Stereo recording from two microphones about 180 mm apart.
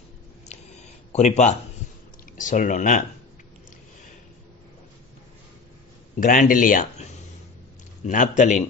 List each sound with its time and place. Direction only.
0.5 s a sound: 40° left (ahead or behind)
2.3 s speech: 45° left (ahead or behind)
6.1 s speech: 50° left (ahead or behind)